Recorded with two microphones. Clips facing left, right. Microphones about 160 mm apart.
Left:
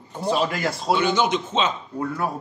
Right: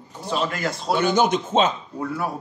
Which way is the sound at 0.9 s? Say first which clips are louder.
Right 1 dB; 45° right (ahead or behind).